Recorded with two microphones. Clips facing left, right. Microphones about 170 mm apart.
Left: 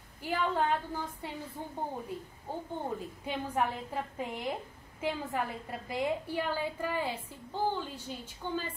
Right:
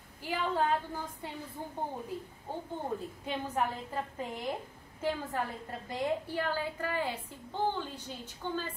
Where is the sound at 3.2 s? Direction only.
10° left (ahead or behind).